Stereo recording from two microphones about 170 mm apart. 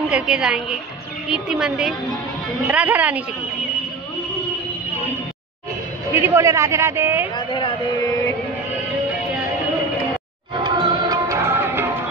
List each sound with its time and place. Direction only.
0.1 s a woman's voice: 5° right (ahead or behind)
6.2 s a man's voice: 15° right (ahead or behind)
7.3 s speech: 25° left (ahead or behind)
10.6 s music: 30° right (ahead or behind)